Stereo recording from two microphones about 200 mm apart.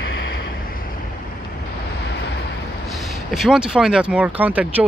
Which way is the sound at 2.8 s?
Centre (ahead or behind).